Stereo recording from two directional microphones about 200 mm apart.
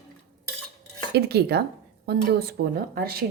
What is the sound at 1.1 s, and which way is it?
Speech, 55° right (ahead or behind).